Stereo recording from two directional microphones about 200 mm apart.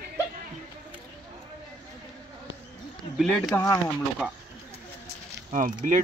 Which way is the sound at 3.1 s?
Centre (ahead or behind).